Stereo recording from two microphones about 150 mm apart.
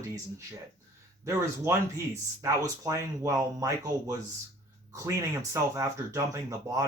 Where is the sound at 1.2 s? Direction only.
20° right (ahead or behind).